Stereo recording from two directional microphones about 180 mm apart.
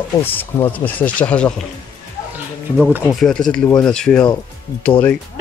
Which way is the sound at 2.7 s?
5° right (ahead or behind).